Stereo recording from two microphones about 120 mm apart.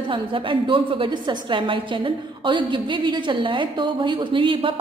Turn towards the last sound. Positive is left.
turn(degrees=-45)  # may be behind; listen again after turning